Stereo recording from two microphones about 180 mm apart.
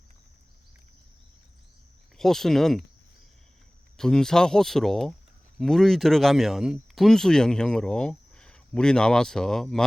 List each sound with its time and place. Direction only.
2.1 s speech: centre (ahead or behind)
3.9 s speech: 5° left (ahead or behind)